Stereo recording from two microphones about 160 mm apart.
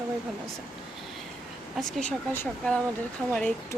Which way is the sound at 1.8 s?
5° left (ahead or behind).